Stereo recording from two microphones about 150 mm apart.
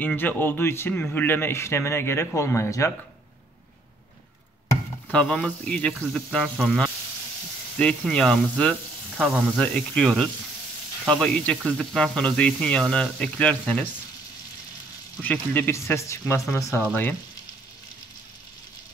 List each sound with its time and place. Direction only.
0.0 s a man's voice: 10° left (ahead or behind)
5.1 s speech: 5° left (ahead or behind)
9.1 s speech: 5° right (ahead or behind)
9.6 s a man's voice: 5° left (ahead or behind)
15.2 s speech: 10° left (ahead or behind)
16.8 s a man's voice: 10° left (ahead or behind)